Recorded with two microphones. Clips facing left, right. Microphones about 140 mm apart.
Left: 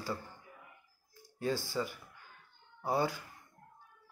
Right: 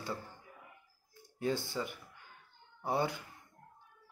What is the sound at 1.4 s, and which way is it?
Speech, 20° right (ahead or behind).